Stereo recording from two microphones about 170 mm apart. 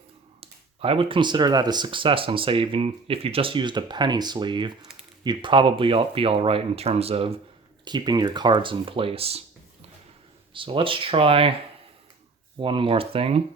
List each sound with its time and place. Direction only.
0.3 s speech: 35° right (ahead or behind)
7.9 s speech: 25° right (ahead or behind)
10.5 s speech: 30° right (ahead or behind)
12.5 s speech: 30° right (ahead or behind)